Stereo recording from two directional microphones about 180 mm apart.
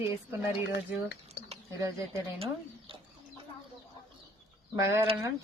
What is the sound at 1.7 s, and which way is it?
Speech, 20° right (ahead or behind).